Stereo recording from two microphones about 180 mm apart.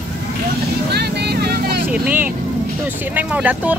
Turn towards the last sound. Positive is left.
turn(degrees=-10)  # may be behind; listen again after turning